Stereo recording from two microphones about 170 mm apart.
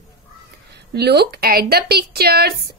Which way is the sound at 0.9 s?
70° right (ahead or behind).